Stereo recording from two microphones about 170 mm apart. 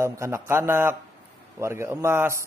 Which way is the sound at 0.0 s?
15° right (ahead or behind).